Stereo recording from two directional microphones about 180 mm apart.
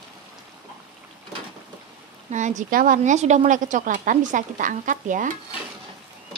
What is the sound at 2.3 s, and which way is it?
A woman's voice, 45° right (ahead or behind).